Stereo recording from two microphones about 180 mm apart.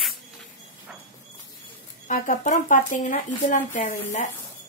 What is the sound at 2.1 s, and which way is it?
Speech, 45° left (ahead or behind).